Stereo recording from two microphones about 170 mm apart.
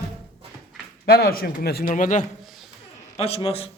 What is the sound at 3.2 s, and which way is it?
Speech, 35° left (ahead or behind).